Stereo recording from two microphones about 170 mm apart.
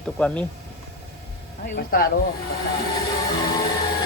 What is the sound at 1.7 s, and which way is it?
Speech, 65° left (ahead or behind).